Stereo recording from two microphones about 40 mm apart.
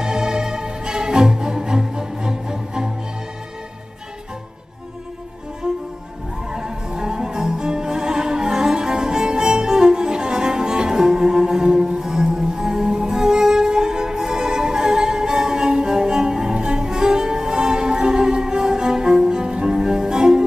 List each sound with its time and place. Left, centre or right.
0.0 s music: centre
5.6 s music: centre